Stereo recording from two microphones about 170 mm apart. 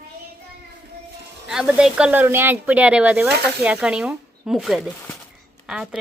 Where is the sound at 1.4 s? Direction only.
5° right (ahead or behind).